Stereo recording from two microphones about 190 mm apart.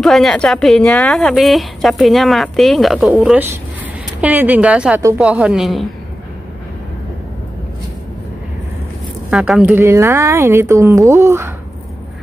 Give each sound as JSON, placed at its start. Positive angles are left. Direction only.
{"t": 0.0, "sound": "a woman's voice", "side_deg": 0}
{"t": 9.3, "sound": "speech", "side_deg": -5}